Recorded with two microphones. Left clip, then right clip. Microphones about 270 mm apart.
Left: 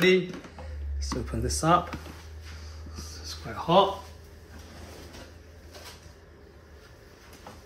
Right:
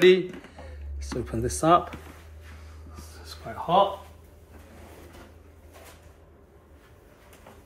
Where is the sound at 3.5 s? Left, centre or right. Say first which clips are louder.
Right 2 dB; centre.